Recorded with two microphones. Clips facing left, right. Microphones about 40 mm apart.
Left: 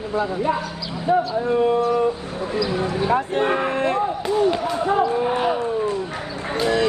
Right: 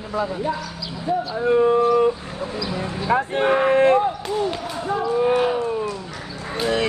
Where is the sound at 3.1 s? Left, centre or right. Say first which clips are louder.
Right 5 dB; right.